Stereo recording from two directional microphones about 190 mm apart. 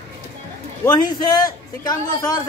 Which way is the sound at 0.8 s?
20° left (ahead or behind).